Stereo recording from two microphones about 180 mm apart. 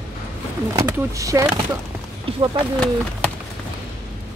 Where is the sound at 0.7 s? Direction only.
20° right (ahead or behind).